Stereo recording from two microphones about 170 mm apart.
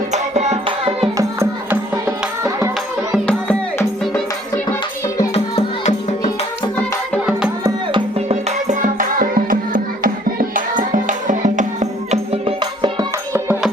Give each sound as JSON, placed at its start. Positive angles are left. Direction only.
{"t": 0.1, "sound": "music", "side_deg": -40}
{"t": 1.1, "sound": "music", "side_deg": -15}
{"t": 3.2, "sound": "music", "side_deg": 5}
{"t": 5.3, "sound": "music", "side_deg": 35}
{"t": 7.9, "sound": "music", "side_deg": -35}